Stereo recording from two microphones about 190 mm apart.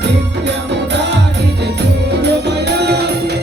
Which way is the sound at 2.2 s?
60° right (ahead or behind).